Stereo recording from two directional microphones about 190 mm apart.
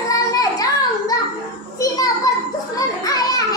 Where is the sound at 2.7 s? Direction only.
20° left (ahead or behind).